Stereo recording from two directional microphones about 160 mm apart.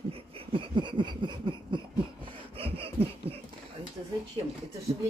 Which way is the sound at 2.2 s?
35° right (ahead or behind).